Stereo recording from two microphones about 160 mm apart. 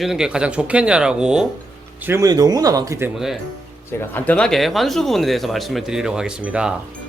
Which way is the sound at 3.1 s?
Centre (ahead or behind).